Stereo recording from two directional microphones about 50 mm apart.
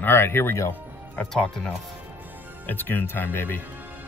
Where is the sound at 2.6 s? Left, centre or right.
Left.